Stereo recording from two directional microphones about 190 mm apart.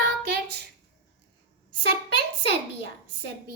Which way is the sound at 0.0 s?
60° right (ahead or behind).